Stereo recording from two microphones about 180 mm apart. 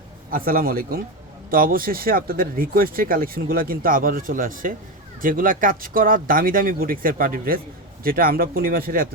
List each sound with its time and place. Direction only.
0.3 s speech: 50° right (ahead or behind)